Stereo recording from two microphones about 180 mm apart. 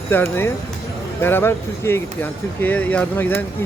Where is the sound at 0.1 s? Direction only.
15° left (ahead or behind).